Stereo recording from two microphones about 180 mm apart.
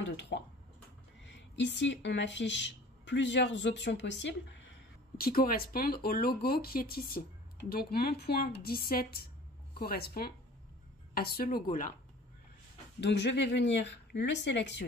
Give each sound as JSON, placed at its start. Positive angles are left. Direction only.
{"t": 0.0, "sound": "speech", "side_deg": 85}
{"t": 5.1, "sound": "speech", "side_deg": 55}
{"t": 13.0, "sound": "speech", "side_deg": 75}